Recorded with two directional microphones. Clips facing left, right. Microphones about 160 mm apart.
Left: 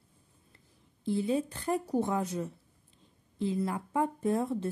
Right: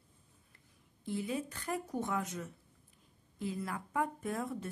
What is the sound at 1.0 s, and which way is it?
Speech, 30° left (ahead or behind).